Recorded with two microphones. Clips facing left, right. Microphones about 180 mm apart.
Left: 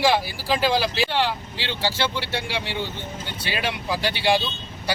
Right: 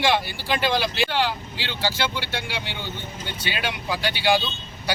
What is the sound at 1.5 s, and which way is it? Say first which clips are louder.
Speech: left 1 dB; 30° left (ahead or behind).